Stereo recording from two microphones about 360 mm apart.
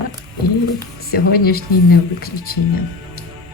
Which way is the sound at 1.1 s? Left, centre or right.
Left.